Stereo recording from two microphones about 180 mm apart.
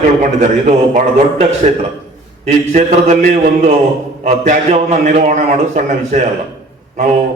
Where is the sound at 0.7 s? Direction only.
40° right (ahead or behind).